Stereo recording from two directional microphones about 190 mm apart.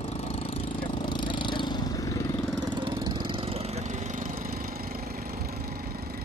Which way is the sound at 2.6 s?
25° right (ahead or behind).